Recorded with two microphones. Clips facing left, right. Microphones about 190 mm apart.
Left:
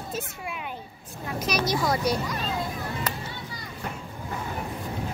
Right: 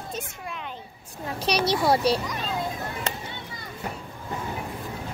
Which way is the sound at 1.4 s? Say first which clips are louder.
Right 2 dB; 30° right (ahead or behind).